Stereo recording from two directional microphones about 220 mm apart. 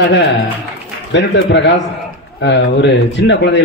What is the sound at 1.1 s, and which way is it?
Speech, 55° left (ahead or behind).